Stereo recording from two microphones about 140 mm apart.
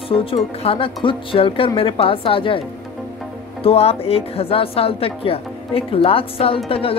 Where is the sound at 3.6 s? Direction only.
45° left (ahead or behind).